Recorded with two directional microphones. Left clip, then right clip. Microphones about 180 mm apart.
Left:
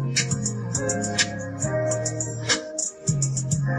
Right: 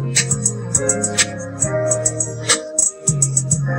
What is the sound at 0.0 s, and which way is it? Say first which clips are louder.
Music: right 6 dB; 20° right (ahead or behind).